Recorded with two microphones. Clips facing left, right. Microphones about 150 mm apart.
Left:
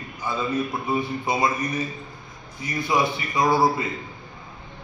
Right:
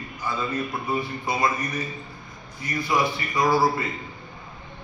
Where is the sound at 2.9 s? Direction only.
20° left (ahead or behind).